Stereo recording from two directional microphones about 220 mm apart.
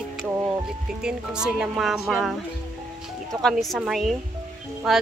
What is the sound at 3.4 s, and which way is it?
Speech, centre (ahead or behind).